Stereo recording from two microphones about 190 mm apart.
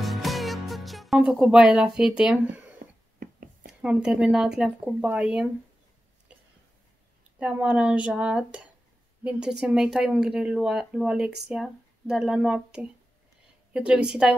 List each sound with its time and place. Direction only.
0.0 s music: centre (ahead or behind)
3.2 s a sound: 50° right (ahead or behind)
3.8 s speech: 5° right (ahead or behind)
7.3 s speech: 5° right (ahead or behind)